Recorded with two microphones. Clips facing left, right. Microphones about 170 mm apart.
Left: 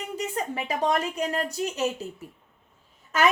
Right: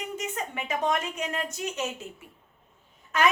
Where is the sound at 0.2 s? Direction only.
35° left (ahead or behind).